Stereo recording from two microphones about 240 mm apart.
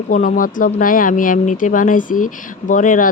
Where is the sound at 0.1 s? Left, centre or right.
Left.